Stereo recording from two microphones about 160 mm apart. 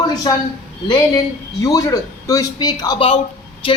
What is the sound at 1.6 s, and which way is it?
A man's voice, 25° left (ahead or behind).